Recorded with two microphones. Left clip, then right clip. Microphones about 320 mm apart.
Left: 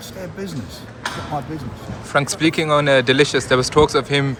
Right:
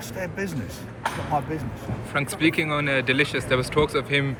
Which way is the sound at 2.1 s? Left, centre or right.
Centre.